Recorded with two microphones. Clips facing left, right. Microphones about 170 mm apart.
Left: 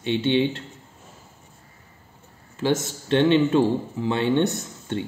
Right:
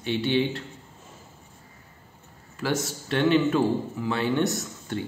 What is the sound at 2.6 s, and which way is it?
A man's voice, 25° left (ahead or behind).